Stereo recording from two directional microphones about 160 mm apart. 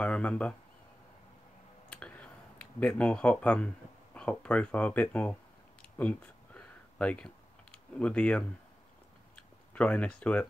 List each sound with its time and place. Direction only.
0.0 s speech: 5° left (ahead or behind)
1.9 s speech: 10° left (ahead or behind)
5.9 s computer keyboard: 10° left (ahead or behind)
9.8 s speech: 5° left (ahead or behind)